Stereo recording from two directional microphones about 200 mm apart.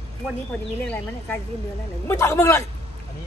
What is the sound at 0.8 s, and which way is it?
Speech, 10° left (ahead or behind).